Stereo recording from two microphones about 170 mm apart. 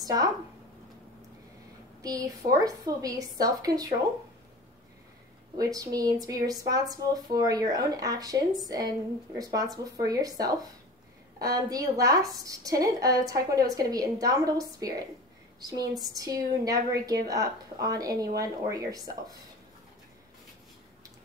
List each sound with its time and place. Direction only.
0.0 s a woman's voice: 20° right (ahead or behind)
2.0 s speech: 20° right (ahead or behind)
5.6 s speech: 20° right (ahead or behind)